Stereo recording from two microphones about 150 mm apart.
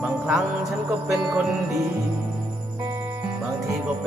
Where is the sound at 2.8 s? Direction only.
20° right (ahead or behind).